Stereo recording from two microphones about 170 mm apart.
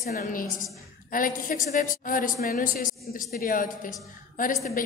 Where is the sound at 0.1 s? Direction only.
50° left (ahead or behind).